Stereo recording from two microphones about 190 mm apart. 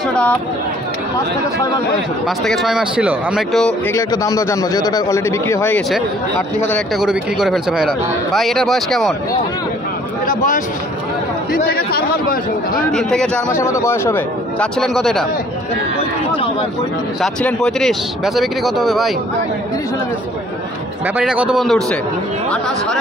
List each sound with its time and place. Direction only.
0.1 s speech: 5° left (ahead or behind)
2.2 s a man's voice: centre (ahead or behind)
3.9 s a man's voice: 15° left (ahead or behind)
7.0 s a man's voice: 5° right (ahead or behind)
10.2 s a man's voice: 45° left (ahead or behind)
12.9 s a man's voice: 5° left (ahead or behind)
13.5 s a man's voice: 15° left (ahead or behind)
17.2 s a man's voice: 5° left (ahead or behind)
21.2 s a man's voice: 5° right (ahead or behind)